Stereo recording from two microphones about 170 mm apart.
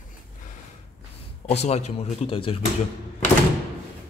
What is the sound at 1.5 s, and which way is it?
Speech, 40° left (ahead or behind).